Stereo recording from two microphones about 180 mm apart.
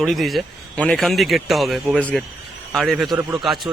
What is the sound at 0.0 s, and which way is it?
A man's voice, centre (ahead or behind).